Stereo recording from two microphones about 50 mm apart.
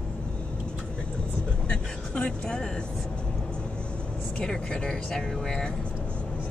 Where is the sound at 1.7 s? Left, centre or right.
Left.